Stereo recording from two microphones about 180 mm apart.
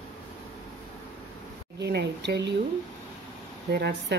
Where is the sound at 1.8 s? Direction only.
70° right (ahead or behind).